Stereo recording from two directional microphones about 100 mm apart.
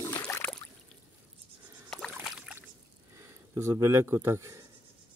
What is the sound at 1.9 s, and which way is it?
Rowboat, 5° left (ahead or behind).